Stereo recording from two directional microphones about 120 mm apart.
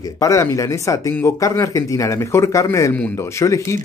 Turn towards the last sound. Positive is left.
turn(degrees=25)  # may be behind; listen again after turning